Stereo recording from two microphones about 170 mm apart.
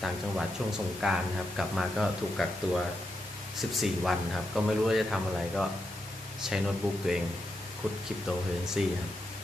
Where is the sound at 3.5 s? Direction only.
Centre (ahead or behind).